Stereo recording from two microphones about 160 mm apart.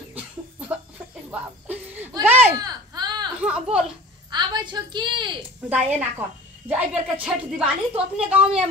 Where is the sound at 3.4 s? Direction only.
5° right (ahead or behind).